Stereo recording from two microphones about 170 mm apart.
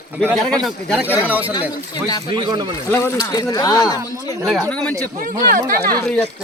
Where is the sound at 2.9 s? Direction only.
20° left (ahead or behind).